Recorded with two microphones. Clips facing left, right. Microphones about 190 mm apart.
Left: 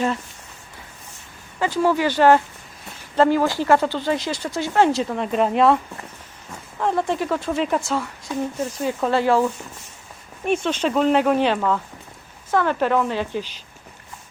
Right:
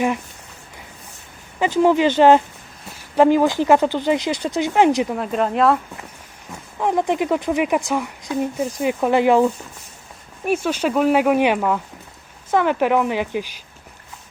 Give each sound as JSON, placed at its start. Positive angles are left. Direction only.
{"t": 1.5, "sound": "speech", "side_deg": -20}
{"t": 5.1, "sound": "speech", "side_deg": 0}
{"t": 6.7, "sound": "speech", "side_deg": -15}